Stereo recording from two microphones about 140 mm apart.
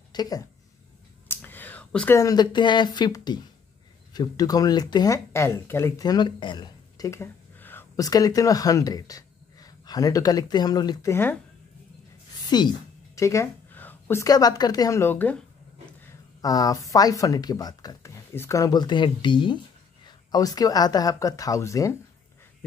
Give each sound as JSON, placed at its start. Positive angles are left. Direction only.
{"t": 0.1, "sound": "speech", "side_deg": 30}
{"t": 1.3, "sound": "whispering", "side_deg": 15}
{"t": 2.1, "sound": "speech", "side_deg": 25}
{"t": 7.1, "sound": "a sound", "side_deg": 15}
{"t": 7.9, "sound": "speech", "side_deg": 25}
{"t": 12.4, "sound": "a woman's voice", "side_deg": 30}
{"t": 16.3, "sound": "speech", "side_deg": 25}